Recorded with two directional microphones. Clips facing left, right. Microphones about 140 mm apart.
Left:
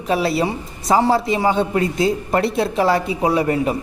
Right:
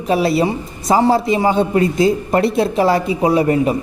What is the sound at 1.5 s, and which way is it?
Speech, 40° right (ahead or behind).